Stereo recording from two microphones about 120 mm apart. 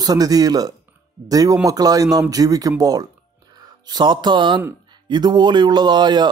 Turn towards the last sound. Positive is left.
turn(degrees=-35)  # may be behind; listen again after turning